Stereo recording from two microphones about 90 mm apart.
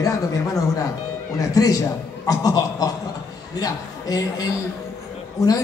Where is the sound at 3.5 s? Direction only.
40° left (ahead or behind).